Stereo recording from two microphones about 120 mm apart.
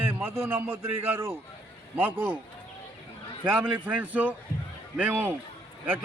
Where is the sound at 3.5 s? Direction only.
15° right (ahead or behind).